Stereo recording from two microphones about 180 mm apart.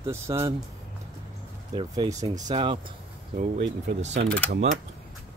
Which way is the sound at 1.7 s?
25° right (ahead or behind).